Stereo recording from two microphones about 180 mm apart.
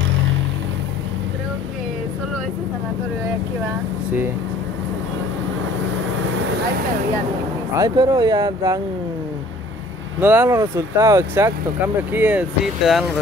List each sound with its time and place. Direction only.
7.7 s speech: 20° right (ahead or behind)
10.2 s speech: 10° right (ahead or behind)